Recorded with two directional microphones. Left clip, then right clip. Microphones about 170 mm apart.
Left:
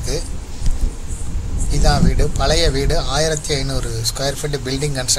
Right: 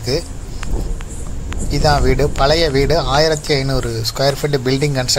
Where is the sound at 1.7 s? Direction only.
55° right (ahead or behind).